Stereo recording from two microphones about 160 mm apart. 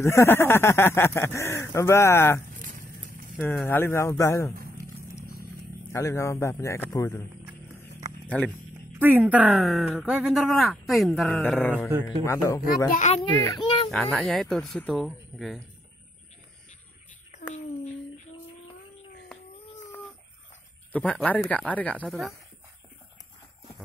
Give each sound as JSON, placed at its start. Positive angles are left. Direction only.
{"t": 0.0, "sound": "speech", "side_deg": 15}
{"t": 2.5, "sound": "a sound", "side_deg": -60}
{"t": 3.3, "sound": "speech", "side_deg": 15}
{"t": 5.9, "sound": "speech", "side_deg": 20}
{"t": 8.3, "sound": "speech", "side_deg": 10}
{"t": 8.9, "sound": "speech", "side_deg": -10}
{"t": 11.3, "sound": "speech", "side_deg": 10}
{"t": 12.3, "sound": "speech", "side_deg": 20}
{"t": 12.9, "sound": "a child's voice", "side_deg": 45}
{"t": 13.4, "sound": "speech", "side_deg": 25}
{"t": 14.1, "sound": "speech", "side_deg": 0}
{"t": 20.9, "sound": "speech", "side_deg": 10}